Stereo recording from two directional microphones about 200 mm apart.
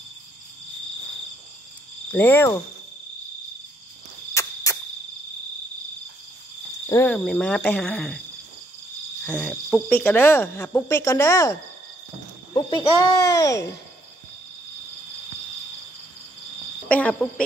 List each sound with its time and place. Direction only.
2.0 s speech: 10° left (ahead or behind)
4.3 s cricket: 15° left (ahead or behind)
6.9 s speech: 10° left (ahead or behind)
9.2 s speech: 5° left (ahead or behind)
12.5 s a child's voice: 20° left (ahead or behind)
16.9 s speech: 5° left (ahead or behind)